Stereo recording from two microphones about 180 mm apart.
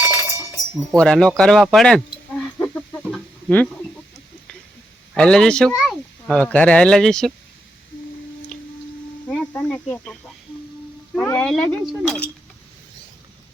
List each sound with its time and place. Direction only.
0.0 s chink: 15° right (ahead or behind)
0.9 s speech: 5° left (ahead or behind)
2.6 s chicken: 10° left (ahead or behind)
5.1 s speech: 5° left (ahead or behind)
9.3 s speech: 5° left (ahead or behind)